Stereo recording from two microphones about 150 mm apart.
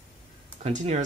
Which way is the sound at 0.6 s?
50° right (ahead or behind).